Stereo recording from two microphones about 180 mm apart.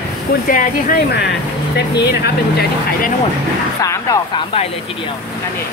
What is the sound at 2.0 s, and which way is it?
Speech, 65° left (ahead or behind).